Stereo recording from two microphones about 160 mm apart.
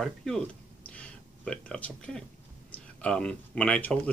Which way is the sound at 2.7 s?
5° left (ahead or behind).